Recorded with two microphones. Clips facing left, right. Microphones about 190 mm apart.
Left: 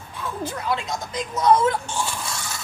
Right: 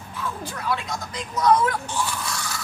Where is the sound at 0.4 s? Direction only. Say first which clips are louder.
Left 4 dB; 20° left (ahead or behind).